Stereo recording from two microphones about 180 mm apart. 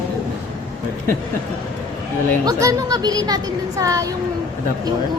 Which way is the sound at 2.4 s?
20° right (ahead or behind).